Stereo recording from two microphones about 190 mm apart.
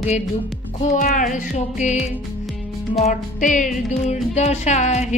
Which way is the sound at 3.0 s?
40° left (ahead or behind).